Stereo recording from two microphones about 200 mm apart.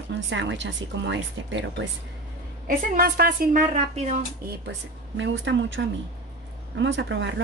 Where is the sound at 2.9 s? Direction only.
50° right (ahead or behind).